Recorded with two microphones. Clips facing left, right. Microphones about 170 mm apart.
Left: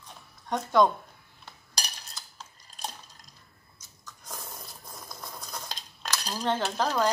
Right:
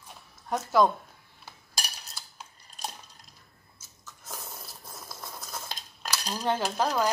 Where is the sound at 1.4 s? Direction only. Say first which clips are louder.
Even; 5° right (ahead or behind).